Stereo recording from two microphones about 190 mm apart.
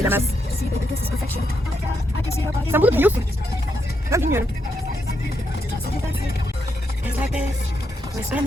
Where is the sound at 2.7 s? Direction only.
10° right (ahead or behind).